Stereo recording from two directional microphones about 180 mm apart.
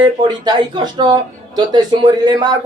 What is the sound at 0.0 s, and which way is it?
Speech, 25° right (ahead or behind).